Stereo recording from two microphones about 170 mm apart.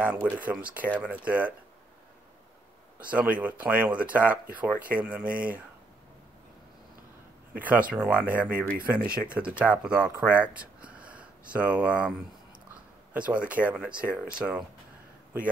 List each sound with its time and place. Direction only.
0.0 s speech: 10° right (ahead or behind)
3.0 s speech: 10° right (ahead or behind)
5.3 s speech: 55° right (ahead or behind)
7.5 s speech: 10° right (ahead or behind)
13.1 s speech: 5° right (ahead or behind)